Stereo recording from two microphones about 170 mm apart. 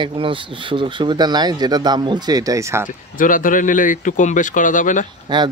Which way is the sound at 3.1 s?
50° left (ahead or behind).